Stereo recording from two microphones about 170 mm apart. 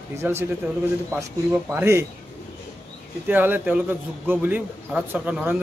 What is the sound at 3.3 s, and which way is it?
A man's voice, 10° right (ahead or behind).